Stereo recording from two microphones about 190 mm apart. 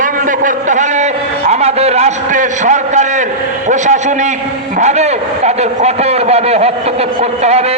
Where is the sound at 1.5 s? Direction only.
35° right (ahead or behind).